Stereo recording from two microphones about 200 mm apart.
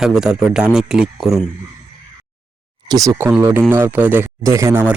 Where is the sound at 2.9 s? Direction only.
20° right (ahead or behind).